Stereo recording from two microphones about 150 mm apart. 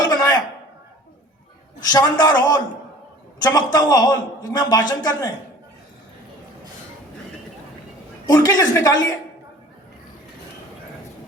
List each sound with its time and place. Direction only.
0.1 s a sound: 25° left (ahead or behind)
1.8 s a man's voice: 25° left (ahead or behind)
8.3 s a man's voice: 25° left (ahead or behind)